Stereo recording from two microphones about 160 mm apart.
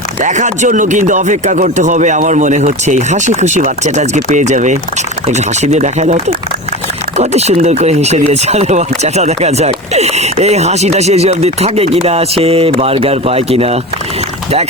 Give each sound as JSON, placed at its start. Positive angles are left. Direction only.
{"t": 0.2, "sound": "speech", "side_deg": -50}